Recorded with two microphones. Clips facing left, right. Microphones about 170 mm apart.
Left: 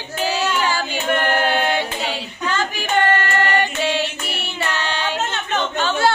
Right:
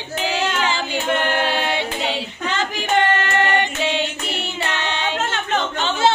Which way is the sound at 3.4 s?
20° right (ahead or behind).